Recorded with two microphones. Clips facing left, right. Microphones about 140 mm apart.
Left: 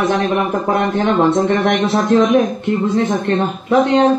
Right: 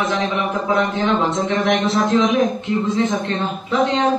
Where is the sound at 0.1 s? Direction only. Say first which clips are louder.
Left 5 dB; 55° left (ahead or behind).